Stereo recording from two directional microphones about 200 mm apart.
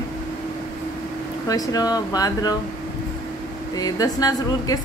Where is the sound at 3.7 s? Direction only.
20° left (ahead or behind).